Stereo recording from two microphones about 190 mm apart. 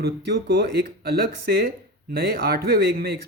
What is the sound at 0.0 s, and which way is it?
Speech, 60° right (ahead or behind).